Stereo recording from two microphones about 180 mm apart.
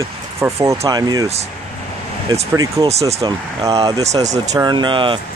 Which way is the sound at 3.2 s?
20° right (ahead or behind).